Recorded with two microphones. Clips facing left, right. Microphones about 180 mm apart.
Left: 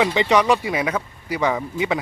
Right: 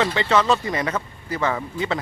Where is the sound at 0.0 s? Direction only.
15° left (ahead or behind).